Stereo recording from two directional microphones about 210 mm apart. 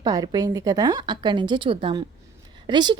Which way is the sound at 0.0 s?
15° right (ahead or behind).